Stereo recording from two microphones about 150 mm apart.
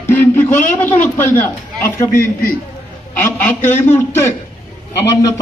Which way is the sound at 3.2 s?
15° left (ahead or behind).